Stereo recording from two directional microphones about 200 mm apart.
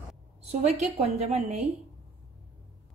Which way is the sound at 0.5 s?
35° right (ahead or behind).